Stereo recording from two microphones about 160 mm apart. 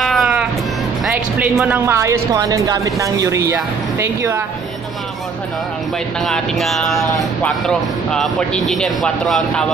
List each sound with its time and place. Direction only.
0.0 s music: centre (ahead or behind)
1.6 s a woman's voice: 15° right (ahead or behind)
6.2 s speech: centre (ahead or behind)